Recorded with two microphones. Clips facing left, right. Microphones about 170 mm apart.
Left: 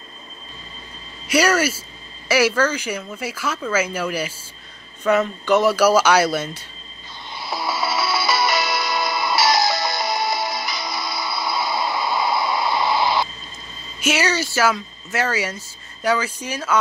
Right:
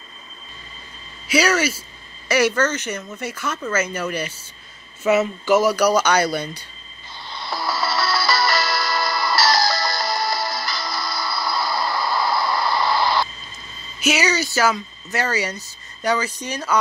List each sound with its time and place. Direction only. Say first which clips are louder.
1.4 s a woman's voice: left 2 dB; 10° left (ahead or behind)
5.0 s speech: right 1 dB; 5° right (ahead or behind)
7.3 s music: even; centre (ahead or behind)
14.1 s speech: left 1 dB; 5° left (ahead or behind)